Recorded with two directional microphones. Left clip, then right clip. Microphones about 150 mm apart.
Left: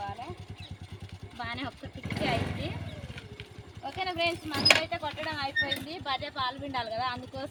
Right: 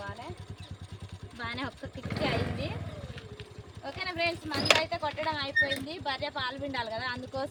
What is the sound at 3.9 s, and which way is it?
Speech, 20° right (ahead or behind).